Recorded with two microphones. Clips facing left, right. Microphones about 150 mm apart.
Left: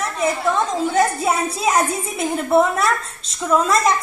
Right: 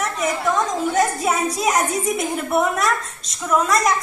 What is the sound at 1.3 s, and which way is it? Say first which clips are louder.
A woman's voice: left 1 dB; 30° left (ahead or behind).